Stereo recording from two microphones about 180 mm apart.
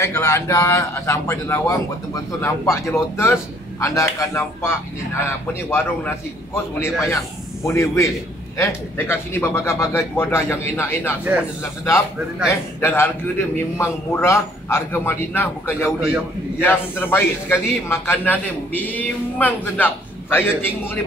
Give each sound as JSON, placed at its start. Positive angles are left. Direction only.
{"t": 0.0, "sound": "a man's voice", "side_deg": 15}
{"t": 12.4, "sound": "a man's voice", "side_deg": 10}